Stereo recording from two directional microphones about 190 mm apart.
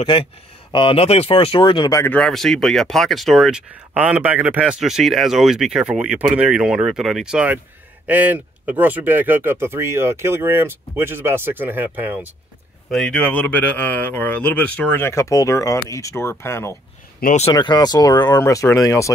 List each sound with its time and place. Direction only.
0.0 s speech: 25° left (ahead or behind)
2.1 s speech: 5° left (ahead or behind)
12.9 s speech: 5° left (ahead or behind)
17.2 s speech: 40° left (ahead or behind)
17.6 s speech: 20° left (ahead or behind)